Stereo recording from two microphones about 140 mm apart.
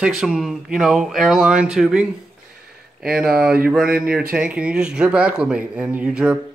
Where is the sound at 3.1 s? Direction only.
5° right (ahead or behind).